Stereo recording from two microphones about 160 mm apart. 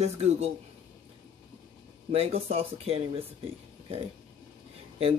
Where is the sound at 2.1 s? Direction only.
40° right (ahead or behind).